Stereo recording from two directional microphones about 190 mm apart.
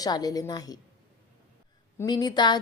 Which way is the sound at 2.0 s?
20° left (ahead or behind).